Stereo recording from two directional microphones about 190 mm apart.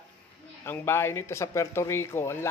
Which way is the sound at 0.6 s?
15° left (ahead or behind).